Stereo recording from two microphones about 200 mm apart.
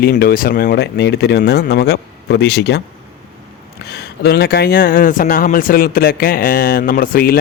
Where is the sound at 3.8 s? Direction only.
55° left (ahead or behind).